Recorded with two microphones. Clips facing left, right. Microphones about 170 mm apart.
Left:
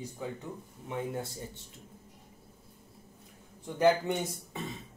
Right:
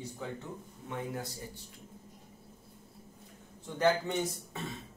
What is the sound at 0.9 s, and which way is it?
Speech, 25° left (ahead or behind).